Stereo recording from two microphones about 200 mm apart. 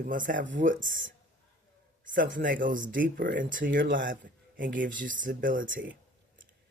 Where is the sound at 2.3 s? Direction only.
40° right (ahead or behind).